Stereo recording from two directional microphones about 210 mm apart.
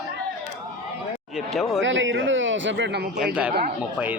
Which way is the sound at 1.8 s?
60° right (ahead or behind).